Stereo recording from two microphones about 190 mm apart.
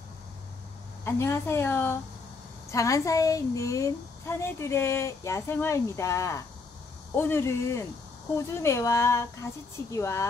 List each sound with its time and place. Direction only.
1.0 s a woman's voice: 15° left (ahead or behind)